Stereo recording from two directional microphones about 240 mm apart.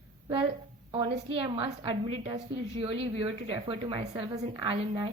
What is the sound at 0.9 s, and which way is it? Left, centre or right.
A woman's voice, right.